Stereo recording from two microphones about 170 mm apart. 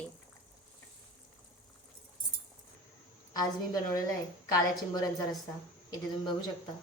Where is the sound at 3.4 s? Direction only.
20° left (ahead or behind).